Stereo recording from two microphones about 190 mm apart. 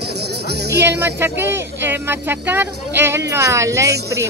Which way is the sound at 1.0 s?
10° right (ahead or behind).